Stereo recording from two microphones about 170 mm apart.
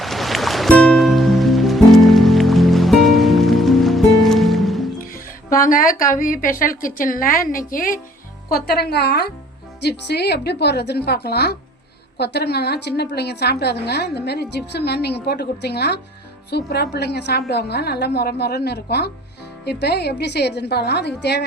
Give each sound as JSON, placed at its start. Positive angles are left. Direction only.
{"t": 0.0, "sound": "music", "side_deg": 0}
{"t": 5.1, "sound": "a woman's voice", "side_deg": 55}
{"t": 8.4, "sound": "a woman's voice", "side_deg": 65}